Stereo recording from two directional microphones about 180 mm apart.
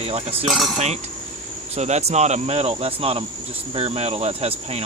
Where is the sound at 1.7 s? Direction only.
35° right (ahead or behind).